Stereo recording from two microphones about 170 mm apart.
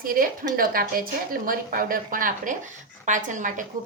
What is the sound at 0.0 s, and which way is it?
A woman's voice, 55° right (ahead or behind).